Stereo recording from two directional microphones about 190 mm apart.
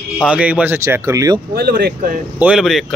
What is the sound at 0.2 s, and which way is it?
A man's voice, 5° right (ahead or behind).